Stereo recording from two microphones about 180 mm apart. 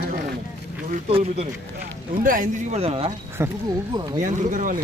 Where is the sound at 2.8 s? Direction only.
30° right (ahead or behind).